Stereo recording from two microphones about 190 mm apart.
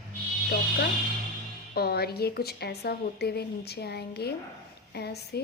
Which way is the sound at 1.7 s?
55° left (ahead or behind).